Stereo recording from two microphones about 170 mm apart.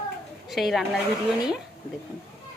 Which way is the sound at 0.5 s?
Centre (ahead or behind).